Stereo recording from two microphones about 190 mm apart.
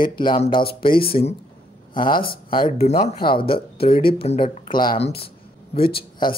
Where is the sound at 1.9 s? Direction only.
25° left (ahead or behind).